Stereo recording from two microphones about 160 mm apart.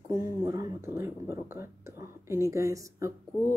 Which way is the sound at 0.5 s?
20° right (ahead or behind).